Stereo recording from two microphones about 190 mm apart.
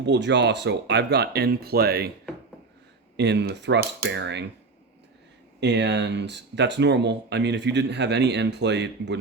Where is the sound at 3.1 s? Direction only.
65° right (ahead or behind).